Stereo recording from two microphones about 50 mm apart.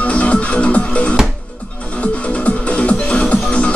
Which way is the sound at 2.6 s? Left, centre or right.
Left.